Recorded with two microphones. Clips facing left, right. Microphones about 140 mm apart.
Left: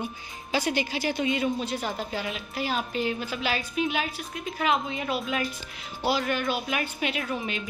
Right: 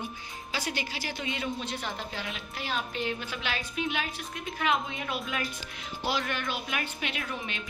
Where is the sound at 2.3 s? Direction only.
10° left (ahead or behind).